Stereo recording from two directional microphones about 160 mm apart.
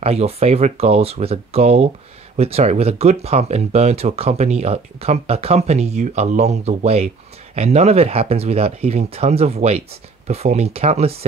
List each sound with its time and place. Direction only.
0.0 s speech: 40° right (ahead or behind)